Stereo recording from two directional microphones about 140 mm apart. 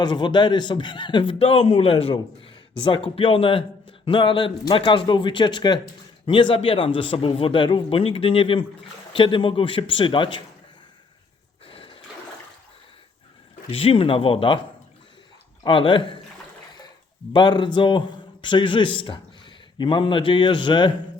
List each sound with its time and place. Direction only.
0.0 s a man's voice: 30° left (ahead or behind)
11.7 s water: 40° left (ahead or behind)
13.7 s a man's voice: 45° left (ahead or behind)
15.6 s a man's voice: 40° left (ahead or behind)
17.3 s a man's voice: 35° left (ahead or behind)